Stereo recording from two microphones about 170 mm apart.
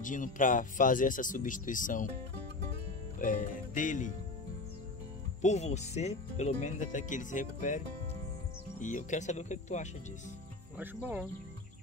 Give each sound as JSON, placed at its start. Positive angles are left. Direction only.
{"t": 0.0, "sound": "speech", "side_deg": 50}
{"t": 3.2, "sound": "music", "side_deg": 55}
{"t": 5.4, "sound": "speech", "side_deg": 40}
{"t": 10.8, "sound": "speech", "side_deg": -10}